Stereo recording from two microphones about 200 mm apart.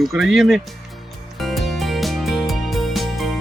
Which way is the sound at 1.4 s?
Centre (ahead or behind).